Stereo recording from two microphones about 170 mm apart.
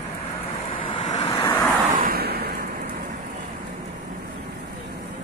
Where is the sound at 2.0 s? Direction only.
60° right (ahead or behind).